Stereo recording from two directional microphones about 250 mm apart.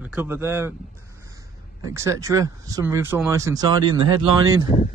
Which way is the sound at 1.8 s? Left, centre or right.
Centre.